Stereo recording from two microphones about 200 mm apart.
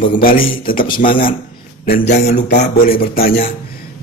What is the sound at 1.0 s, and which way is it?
Speech, 40° left (ahead or behind).